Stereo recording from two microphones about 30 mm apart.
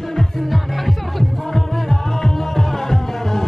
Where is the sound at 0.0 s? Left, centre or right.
Centre.